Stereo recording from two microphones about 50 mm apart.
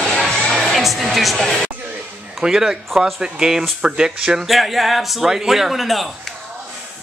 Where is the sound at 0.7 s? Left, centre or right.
Centre.